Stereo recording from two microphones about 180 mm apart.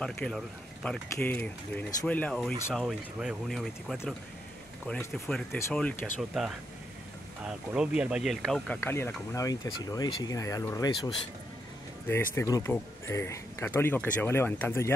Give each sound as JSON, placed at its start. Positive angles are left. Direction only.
{"t": 0.0, "sound": "speech", "side_deg": 5}
{"t": 8.8, "sound": "speech", "side_deg": 15}
{"t": 12.4, "sound": "speech", "side_deg": 15}